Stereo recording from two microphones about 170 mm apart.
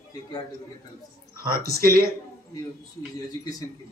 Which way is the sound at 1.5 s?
60° right (ahead or behind).